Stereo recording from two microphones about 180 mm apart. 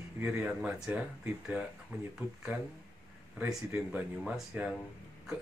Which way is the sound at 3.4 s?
10° right (ahead or behind).